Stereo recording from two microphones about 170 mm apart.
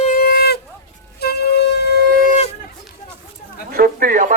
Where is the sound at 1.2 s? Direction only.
70° left (ahead or behind).